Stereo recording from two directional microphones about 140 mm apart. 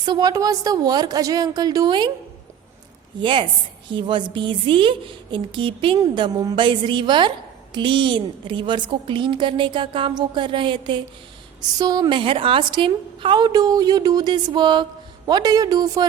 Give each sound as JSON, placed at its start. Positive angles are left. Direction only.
{"t": 0.0, "sound": "a woman's voice", "side_deg": -30}
{"t": 3.2, "sound": "a woman's voice", "side_deg": -35}